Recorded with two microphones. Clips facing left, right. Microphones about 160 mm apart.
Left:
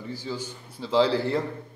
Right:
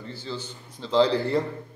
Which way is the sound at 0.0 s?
10° left (ahead or behind).